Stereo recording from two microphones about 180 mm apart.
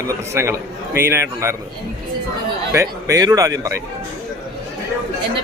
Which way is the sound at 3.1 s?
20° right (ahead or behind).